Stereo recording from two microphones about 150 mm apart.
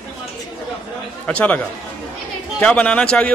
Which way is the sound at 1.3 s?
10° left (ahead or behind).